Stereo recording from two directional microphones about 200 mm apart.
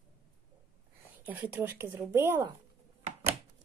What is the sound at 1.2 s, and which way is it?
Speech, 10° right (ahead or behind).